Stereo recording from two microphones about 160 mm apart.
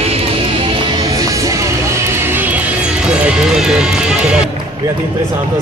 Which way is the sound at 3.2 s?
5° right (ahead or behind).